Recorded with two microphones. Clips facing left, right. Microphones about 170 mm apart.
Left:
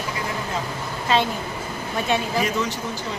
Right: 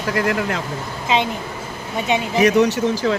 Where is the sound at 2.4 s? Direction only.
75° right (ahead or behind).